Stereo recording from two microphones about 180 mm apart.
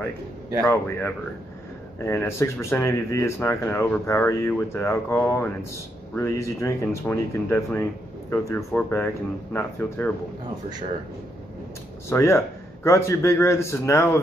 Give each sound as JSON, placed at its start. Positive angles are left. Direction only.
{"t": 0.7, "sound": "speech", "side_deg": 15}
{"t": 12.1, "sound": "speech", "side_deg": 15}